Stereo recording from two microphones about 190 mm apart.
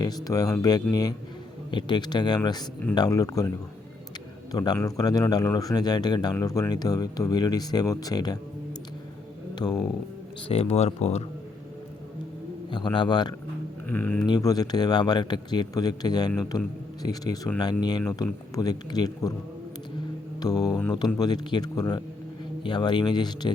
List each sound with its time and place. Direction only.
0.3 s speech: 20° left (ahead or behind)
4.5 s speech: 20° left (ahead or behind)
9.6 s speech: 20° left (ahead or behind)
10.5 s speech: 30° left (ahead or behind)
12.7 s speech: 25° left (ahead or behind)
13.8 s speech: 10° left (ahead or behind)
14.3 s speech: 20° left (ahead or behind)
20.4 s speech: 20° left (ahead or behind)
20.7 s speech: 5° left (ahead or behind)
20.9 s speech: 20° left (ahead or behind)